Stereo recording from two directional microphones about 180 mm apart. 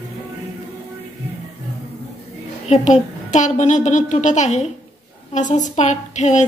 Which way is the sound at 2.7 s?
40° left (ahead or behind).